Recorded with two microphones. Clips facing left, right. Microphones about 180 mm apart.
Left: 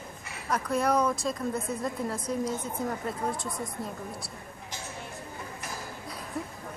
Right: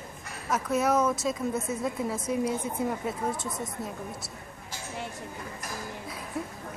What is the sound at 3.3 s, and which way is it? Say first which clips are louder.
Speech: right 1 dB; 20° right (ahead or behind).